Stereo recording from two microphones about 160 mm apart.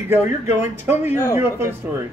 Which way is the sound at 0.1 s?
15° right (ahead or behind).